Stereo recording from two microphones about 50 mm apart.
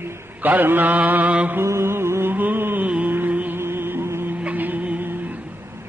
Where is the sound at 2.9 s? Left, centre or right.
Right.